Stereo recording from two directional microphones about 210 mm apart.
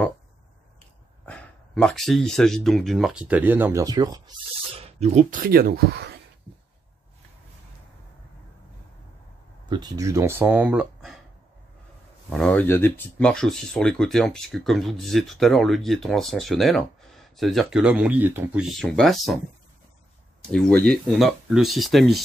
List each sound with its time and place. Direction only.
1.2 s speech: 5° left (ahead or behind); by 4.2 s 20° right (ahead or behind)
4.7 s speech: 30° right (ahead or behind); by 6.1 s 50° right (ahead or behind)
9.7 s speech: 20° right (ahead or behind); by 11.1 s 5° right (ahead or behind)
12.3 s speech: 5° left (ahead or behind)
18.8 s speech: centre (ahead or behind)
20.4 s speech: 5° left (ahead or behind)